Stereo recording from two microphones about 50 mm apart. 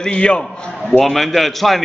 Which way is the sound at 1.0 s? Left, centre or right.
Centre.